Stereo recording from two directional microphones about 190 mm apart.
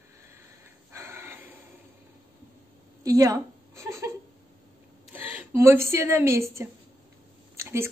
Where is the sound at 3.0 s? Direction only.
15° right (ahead or behind).